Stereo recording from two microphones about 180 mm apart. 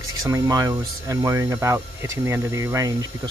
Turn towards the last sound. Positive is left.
turn(degrees=-15)  # may be behind; listen again after turning